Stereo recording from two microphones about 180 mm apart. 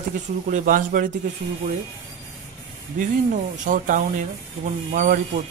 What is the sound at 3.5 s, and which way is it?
A man's voice, 45° right (ahead or behind).